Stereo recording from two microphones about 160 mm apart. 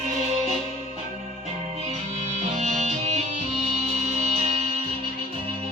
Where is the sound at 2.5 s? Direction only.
45° right (ahead or behind).